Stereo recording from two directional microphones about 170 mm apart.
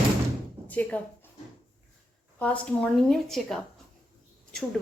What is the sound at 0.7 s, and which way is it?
Speech, 10° left (ahead or behind).